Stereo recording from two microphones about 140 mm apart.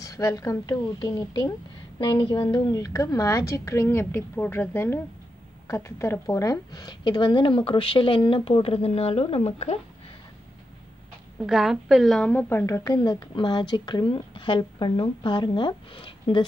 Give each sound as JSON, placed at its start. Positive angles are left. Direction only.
{"t": 0.0, "sound": "a woman's voice", "side_deg": 25}
{"t": 11.4, "sound": "a woman's voice", "side_deg": -5}